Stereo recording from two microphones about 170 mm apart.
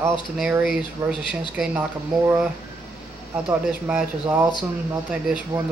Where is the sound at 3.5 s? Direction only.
10° right (ahead or behind).